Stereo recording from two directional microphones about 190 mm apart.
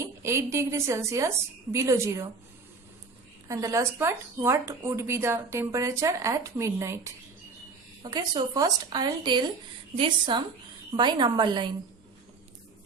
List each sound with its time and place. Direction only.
0.0 s a woman's voice: 15° right (ahead or behind)
3.5 s speech: 15° right (ahead or behind)